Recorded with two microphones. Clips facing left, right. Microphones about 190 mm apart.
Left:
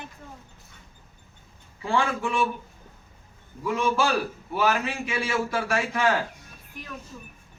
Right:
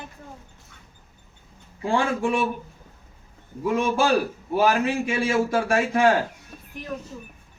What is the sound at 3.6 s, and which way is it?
A man's voice, 50° right (ahead or behind).